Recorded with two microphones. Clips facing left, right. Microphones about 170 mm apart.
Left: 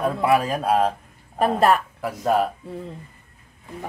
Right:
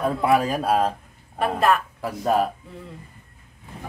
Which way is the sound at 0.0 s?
Centre (ahead or behind).